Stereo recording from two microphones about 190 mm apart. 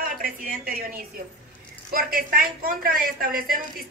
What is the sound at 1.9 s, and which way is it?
A woman's voice, 50° right (ahead or behind).